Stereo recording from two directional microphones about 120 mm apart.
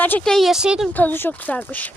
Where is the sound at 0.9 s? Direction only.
15° left (ahead or behind).